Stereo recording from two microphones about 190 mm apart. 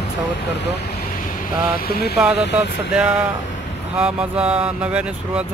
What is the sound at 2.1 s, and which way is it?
Speech, 5° right (ahead or behind).